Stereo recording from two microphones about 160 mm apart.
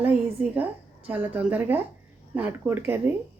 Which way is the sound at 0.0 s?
10° right (ahead or behind).